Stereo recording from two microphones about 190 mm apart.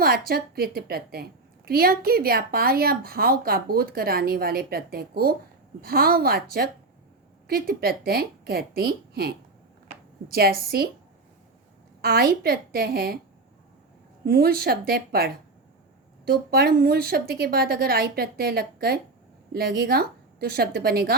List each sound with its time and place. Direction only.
0.0 s a woman's voice: 55° right (ahead or behind)
12.0 s a woman's voice: 55° right (ahead or behind)
14.3 s a woman's voice: 55° right (ahead or behind)